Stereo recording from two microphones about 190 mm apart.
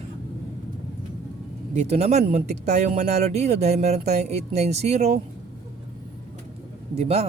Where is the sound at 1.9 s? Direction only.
35° right (ahead or behind).